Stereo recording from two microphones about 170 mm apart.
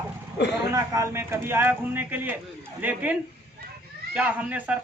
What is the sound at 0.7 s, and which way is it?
Speech, 15° right (ahead or behind).